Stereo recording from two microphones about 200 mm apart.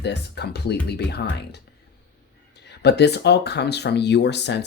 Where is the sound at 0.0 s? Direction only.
55° left (ahead or behind).